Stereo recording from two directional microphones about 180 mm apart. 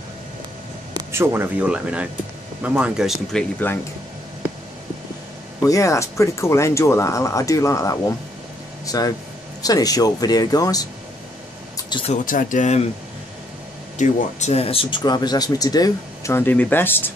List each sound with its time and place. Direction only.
0.9 s speech: 15° right (ahead or behind)
3.6 s speech: 10° left (ahead or behind)
5.6 s speech: 15° left (ahead or behind)
12.1 s speech: 45° left (ahead or behind)
13.9 s speech: 40° left (ahead or behind); by 17.1 s 10° left (ahead or behind)